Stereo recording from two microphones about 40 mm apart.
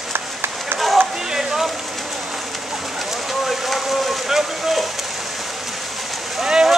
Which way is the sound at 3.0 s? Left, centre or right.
Centre.